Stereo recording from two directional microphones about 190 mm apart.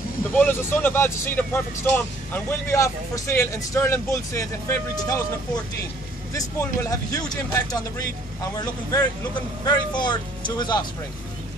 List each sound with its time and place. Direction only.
0.3 s speech: 10° left (ahead or behind)
6.8 s a man's voice: 20° left (ahead or behind)